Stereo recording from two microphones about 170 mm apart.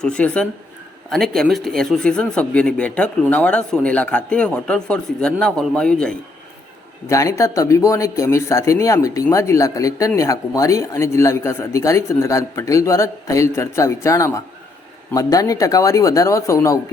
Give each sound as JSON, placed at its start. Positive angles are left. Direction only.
{"t": 0.0, "sound": "speech", "side_deg": 5}
{"t": 7.1, "sound": "speech", "side_deg": 20}